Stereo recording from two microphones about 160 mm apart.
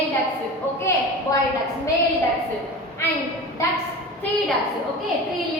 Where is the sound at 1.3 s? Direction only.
20° left (ahead or behind).